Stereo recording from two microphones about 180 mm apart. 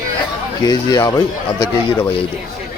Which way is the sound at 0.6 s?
20° left (ahead or behind).